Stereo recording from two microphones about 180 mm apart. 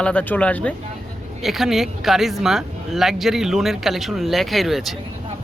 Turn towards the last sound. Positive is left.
turn(degrees=0)  # may be behind; listen again after turning